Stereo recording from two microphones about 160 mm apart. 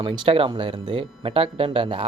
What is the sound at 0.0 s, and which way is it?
Speech, 35° right (ahead or behind).